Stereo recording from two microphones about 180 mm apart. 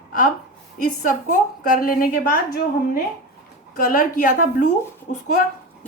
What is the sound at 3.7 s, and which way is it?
Speech, 50° left (ahead or behind).